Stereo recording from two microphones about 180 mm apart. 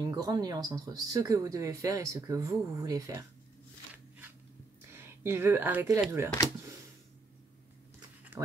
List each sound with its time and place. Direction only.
0.1 s speech: 20° right (ahead or behind)
4.9 s speech: 10° right (ahead or behind)